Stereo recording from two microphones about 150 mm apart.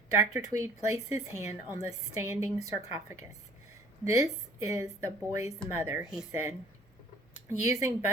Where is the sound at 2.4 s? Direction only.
25° right (ahead or behind).